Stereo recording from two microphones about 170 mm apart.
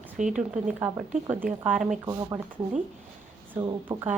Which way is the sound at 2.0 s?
20° right (ahead or behind).